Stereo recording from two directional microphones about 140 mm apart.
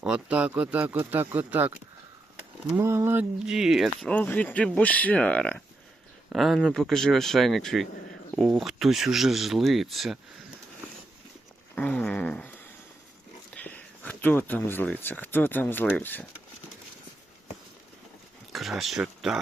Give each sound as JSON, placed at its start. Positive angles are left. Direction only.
{"t": 0.0, "sound": "speech", "side_deg": -10}
{"t": 2.7, "sound": "speech", "side_deg": -20}
{"t": 3.4, "sound": "speech", "side_deg": -5}
{"t": 4.0, "sound": "speech", "side_deg": 10}
{"t": 11.7, "sound": "speech", "side_deg": 10}
{"t": 13.6, "sound": "speech", "side_deg": 10}
{"t": 18.5, "sound": "speech", "side_deg": 0}